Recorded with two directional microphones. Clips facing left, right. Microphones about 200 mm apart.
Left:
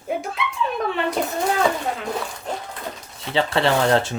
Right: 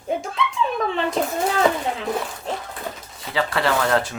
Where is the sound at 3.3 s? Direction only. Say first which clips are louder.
Left 2 dB; 25° left (ahead or behind).